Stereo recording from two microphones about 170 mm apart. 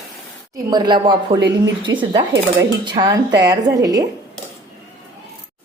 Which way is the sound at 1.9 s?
90° right.